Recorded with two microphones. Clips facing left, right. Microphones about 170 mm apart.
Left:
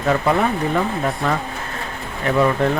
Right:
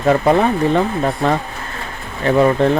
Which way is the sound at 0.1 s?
35° right (ahead or behind).